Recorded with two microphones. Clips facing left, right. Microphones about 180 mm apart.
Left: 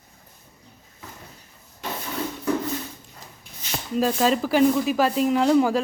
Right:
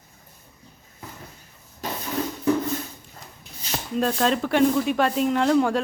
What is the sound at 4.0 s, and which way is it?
Speech, 5° left (ahead or behind).